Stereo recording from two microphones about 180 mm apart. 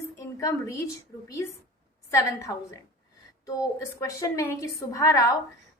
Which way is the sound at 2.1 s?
15° left (ahead or behind).